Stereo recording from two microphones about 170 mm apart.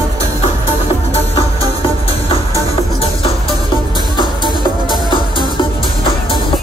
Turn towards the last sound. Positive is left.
turn(degrees=30)  # may be behind; listen again after turning